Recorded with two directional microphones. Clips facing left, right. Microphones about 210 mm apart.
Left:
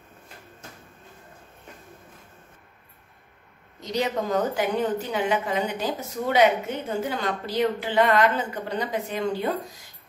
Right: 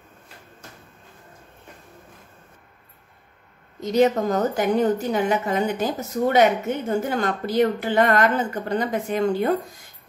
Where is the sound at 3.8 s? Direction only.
50° right (ahead or behind).